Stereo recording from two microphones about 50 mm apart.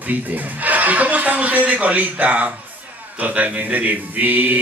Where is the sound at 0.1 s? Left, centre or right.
Right.